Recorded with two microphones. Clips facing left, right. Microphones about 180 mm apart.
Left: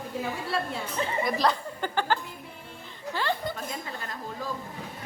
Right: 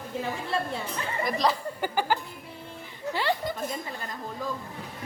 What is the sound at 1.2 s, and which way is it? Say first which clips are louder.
Speech: right 2 dB; centre (ahead or behind).